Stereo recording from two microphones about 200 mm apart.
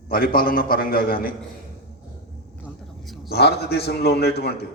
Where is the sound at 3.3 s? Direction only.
55° left (ahead or behind).